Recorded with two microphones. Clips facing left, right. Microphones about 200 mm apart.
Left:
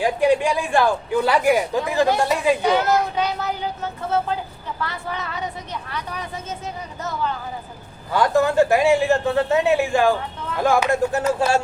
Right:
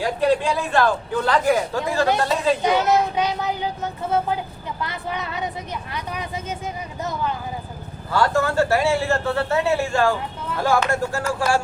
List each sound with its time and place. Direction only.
0.0 s speech: 15° left (ahead or behind)
2.6 s a child's voice: 15° right (ahead or behind)
4.8 s speech: 15° right (ahead or behind)
8.1 s speech: 15° left (ahead or behind)